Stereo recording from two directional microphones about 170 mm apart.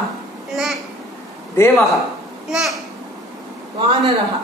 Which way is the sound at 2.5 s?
Centre (ahead or behind).